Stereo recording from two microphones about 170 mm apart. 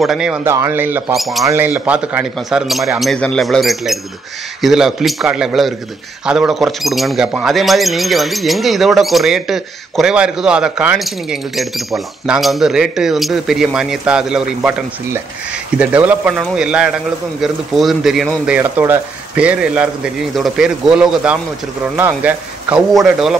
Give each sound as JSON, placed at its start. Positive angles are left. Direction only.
{"t": 0.0, "sound": "speech", "side_deg": -5}
{"t": 1.1, "sound": "speech", "side_deg": 0}
{"t": 1.4, "sound": "speech", "side_deg": -15}
{"t": 15.8, "sound": "speech", "side_deg": -10}